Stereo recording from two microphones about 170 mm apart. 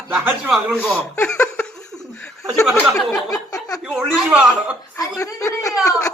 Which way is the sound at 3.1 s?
20° left (ahead or behind).